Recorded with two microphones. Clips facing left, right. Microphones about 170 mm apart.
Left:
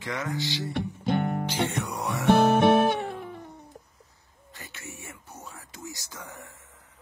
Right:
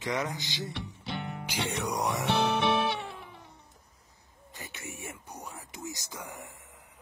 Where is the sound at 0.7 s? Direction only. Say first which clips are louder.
Left 11 dB; 50° left (ahead or behind).